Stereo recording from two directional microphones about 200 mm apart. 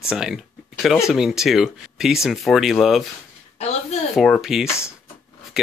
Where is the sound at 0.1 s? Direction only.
5° right (ahead or behind).